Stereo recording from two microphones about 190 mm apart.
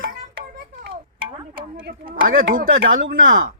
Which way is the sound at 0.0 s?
50° right (ahead or behind).